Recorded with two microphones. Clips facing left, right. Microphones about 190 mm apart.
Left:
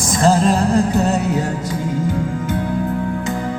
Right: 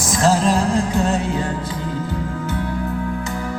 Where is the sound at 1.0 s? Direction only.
40° left (ahead or behind).